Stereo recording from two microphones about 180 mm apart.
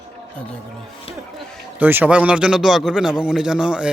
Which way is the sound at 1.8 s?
10° right (ahead or behind).